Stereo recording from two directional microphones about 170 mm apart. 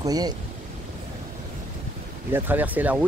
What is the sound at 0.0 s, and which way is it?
Speech, 20° right (ahead or behind).